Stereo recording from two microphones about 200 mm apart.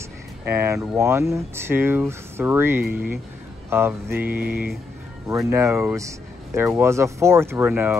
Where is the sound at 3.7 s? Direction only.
10° right (ahead or behind).